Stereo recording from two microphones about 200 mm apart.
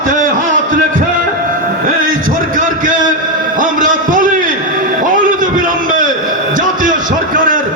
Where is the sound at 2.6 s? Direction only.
40° right (ahead or behind).